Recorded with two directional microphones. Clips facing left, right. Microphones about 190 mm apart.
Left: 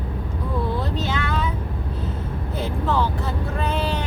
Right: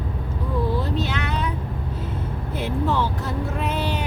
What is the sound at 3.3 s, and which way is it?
Speech, centre (ahead or behind).